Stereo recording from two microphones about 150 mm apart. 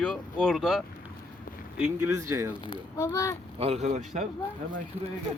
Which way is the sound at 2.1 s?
20° right (ahead or behind).